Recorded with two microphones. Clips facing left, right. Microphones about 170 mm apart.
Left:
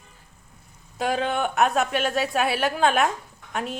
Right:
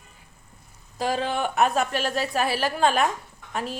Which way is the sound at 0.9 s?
Centre (ahead or behind).